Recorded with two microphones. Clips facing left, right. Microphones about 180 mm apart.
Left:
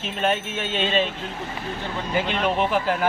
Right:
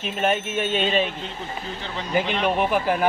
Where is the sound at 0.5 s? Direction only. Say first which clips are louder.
Right 3 dB; 50° right (ahead or behind).